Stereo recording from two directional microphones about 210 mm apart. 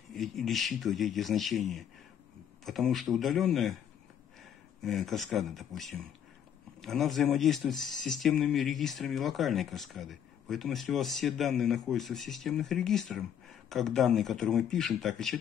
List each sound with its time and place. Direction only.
0.1 s speech: centre (ahead or behind)
4.8 s speech: centre (ahead or behind)